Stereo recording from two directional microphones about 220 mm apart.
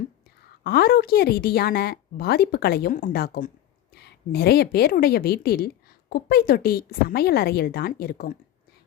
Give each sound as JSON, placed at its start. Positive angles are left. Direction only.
{"t": 0.6, "sound": "a woman's voice", "side_deg": 45}